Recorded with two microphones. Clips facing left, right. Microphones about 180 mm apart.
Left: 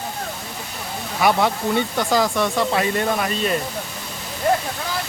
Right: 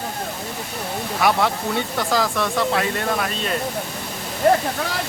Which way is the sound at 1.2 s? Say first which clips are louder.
Left 2 dB; centre (ahead or behind).